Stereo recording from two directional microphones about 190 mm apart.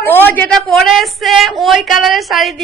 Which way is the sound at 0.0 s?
10° left (ahead or behind).